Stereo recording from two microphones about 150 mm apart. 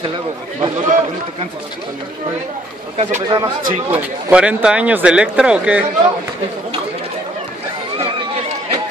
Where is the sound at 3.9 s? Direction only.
10° right (ahead or behind).